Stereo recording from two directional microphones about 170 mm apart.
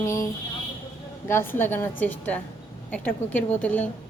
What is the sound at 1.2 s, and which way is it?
A woman's voice, 15° left (ahead or behind).